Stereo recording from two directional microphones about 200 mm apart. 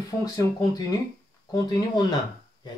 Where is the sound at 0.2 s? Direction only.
20° left (ahead or behind).